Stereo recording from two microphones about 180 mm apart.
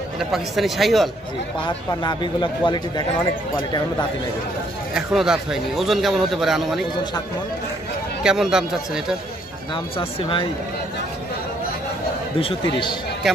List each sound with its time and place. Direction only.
0.2 s a man's voice: centre (ahead or behind)
1.9 s a man's voice: 25° left (ahead or behind)
4.9 s a man's voice: 5° right (ahead or behind)
8.2 s a man's voice: 5° right (ahead or behind)
9.9 s a man's voice: 30° left (ahead or behind)
12.4 s a man's voice: 30° left (ahead or behind)